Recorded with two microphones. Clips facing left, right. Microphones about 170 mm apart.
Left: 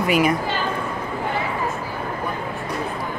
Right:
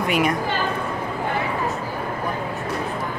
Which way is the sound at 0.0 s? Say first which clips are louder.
Left 2 dB; 5° left (ahead or behind).